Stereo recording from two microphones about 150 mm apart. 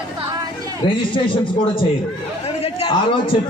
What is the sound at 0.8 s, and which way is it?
Speech, 35° left (ahead or behind).